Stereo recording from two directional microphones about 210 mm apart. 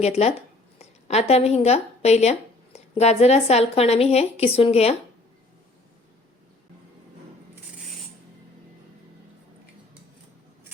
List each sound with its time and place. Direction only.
0.0 s speech: 30° left (ahead or behind)